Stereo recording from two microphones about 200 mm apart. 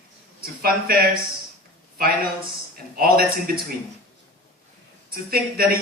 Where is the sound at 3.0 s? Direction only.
50° right (ahead or behind).